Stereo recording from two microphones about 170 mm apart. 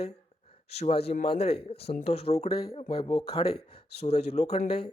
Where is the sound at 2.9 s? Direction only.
25° left (ahead or behind).